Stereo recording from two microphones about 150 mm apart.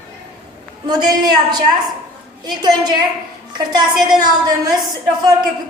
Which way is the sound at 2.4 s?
30° right (ahead or behind).